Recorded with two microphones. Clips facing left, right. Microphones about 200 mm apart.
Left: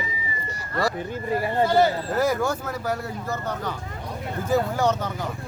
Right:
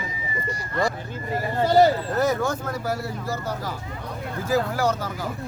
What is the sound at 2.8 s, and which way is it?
Speech, 5° right (ahead or behind).